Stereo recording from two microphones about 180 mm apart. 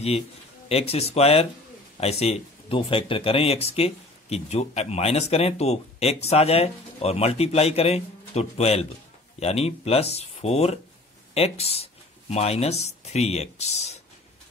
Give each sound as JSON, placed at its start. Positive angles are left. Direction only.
{"t": 0.7, "sound": "speech", "side_deg": 35}